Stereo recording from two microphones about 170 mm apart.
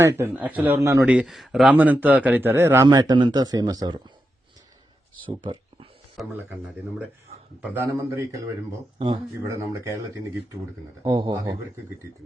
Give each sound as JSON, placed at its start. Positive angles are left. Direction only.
{"t": 0.0, "sound": "a man's voice", "side_deg": -10}
{"t": 5.2, "sound": "speech", "side_deg": -30}
{"t": 7.6, "sound": "a man's voice", "side_deg": -10}
{"t": 9.0, "sound": "speech", "side_deg": -30}
{"t": 9.4, "sound": "a man's voice", "side_deg": -15}
{"t": 11.0, "sound": "speech", "side_deg": -25}